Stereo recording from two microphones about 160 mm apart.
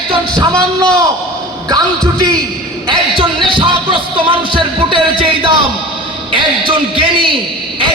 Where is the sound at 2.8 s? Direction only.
30° right (ahead or behind).